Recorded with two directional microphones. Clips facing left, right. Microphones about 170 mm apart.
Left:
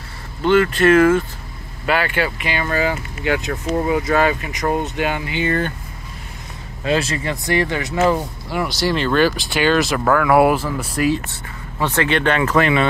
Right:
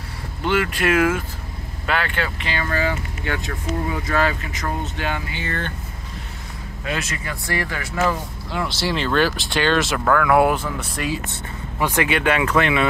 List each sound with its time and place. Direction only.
0.5 s speech: 10° right (ahead or behind)
1.9 s speech: 5° left (ahead or behind)
6.8 s speech: 30° left (ahead or behind)
8.5 s speech: 5° left (ahead or behind)
11.8 s speech: 15° right (ahead or behind)